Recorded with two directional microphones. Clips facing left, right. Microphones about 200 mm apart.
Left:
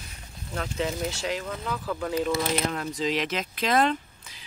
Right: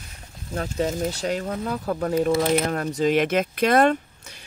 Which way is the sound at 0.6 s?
40° right (ahead or behind).